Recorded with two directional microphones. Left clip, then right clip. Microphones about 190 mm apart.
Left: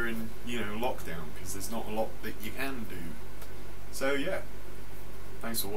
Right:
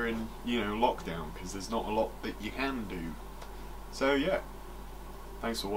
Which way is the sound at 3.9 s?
20° left (ahead or behind).